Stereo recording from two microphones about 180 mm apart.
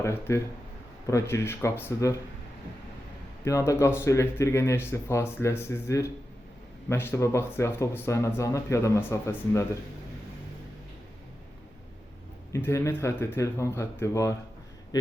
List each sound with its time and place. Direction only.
0.0 s speech: 15° left (ahead or behind)
3.4 s speech: 15° left (ahead or behind)
12.5 s speech: 15° left (ahead or behind)